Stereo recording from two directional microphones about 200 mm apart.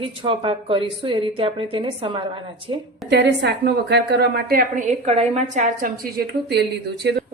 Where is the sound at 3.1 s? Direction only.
60° right (ahead or behind).